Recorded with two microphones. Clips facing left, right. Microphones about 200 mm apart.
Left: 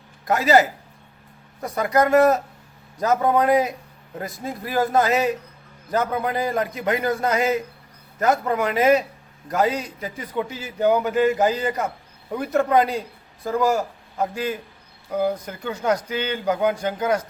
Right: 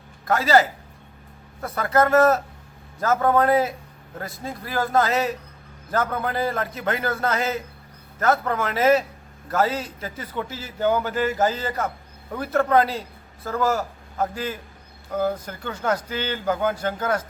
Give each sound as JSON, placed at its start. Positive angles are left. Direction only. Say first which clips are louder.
{"t": 0.3, "sound": "a man's voice", "louder": "left 1 dB", "side_deg": 20}
{"t": 4.3, "sound": "speech", "louder": "left 2 dB", "side_deg": 0}
{"t": 4.6, "sound": "a man's voice", "louder": "left 2 dB", "side_deg": 20}